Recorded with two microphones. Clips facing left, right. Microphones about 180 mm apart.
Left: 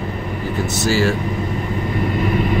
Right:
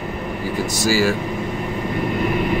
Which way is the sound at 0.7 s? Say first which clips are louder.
Even; 10° right (ahead or behind).